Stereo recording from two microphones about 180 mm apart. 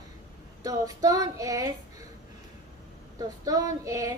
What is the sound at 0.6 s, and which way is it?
A woman's voice, 20° right (ahead or behind).